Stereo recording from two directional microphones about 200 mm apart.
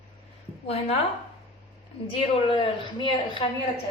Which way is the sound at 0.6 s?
30° left (ahead or behind).